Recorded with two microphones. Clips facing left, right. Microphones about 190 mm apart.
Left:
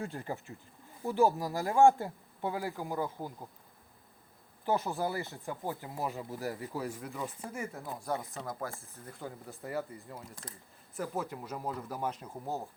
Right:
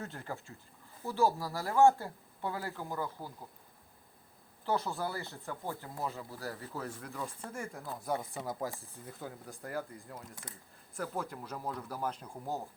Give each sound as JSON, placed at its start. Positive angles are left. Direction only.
{"t": 0.0, "sound": "speech", "side_deg": 15}
{"t": 4.6, "sound": "speech", "side_deg": 15}
{"t": 8.0, "sound": "speech", "side_deg": -5}